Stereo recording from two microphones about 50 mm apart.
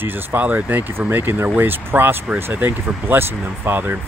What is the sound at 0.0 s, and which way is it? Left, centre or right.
Speech, right.